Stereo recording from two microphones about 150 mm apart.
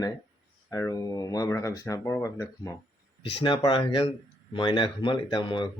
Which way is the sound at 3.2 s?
35° left (ahead or behind).